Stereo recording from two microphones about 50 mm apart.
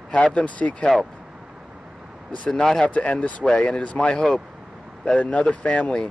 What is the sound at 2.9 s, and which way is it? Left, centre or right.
Speech, left.